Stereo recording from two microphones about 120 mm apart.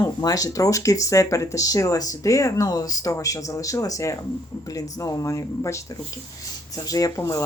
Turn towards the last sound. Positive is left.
turn(degrees=25)  # may be behind; listen again after turning